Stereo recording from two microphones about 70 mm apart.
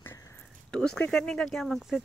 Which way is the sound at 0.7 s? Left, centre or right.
Centre.